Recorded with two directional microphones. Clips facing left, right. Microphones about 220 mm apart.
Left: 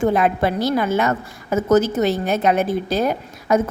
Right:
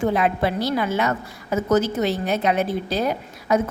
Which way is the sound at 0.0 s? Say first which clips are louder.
Left 3 dB; 50° left (ahead or behind).